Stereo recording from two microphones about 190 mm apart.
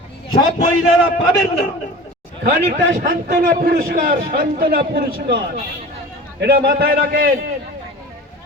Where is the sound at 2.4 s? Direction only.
55° right (ahead or behind).